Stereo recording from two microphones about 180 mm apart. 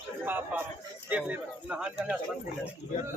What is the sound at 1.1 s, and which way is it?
Speech, 5° right (ahead or behind).